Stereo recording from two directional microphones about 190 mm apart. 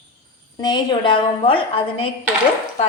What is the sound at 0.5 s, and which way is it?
A woman's voice, 20° left (ahead or behind).